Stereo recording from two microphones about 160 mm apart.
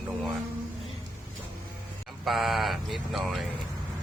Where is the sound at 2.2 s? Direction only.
Centre (ahead or behind).